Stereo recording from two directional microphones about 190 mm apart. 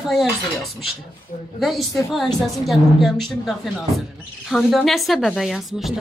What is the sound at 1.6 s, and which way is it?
A woman's voice, centre (ahead or behind).